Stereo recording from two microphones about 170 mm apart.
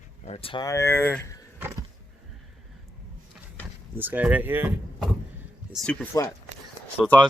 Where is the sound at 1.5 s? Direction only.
15° right (ahead or behind).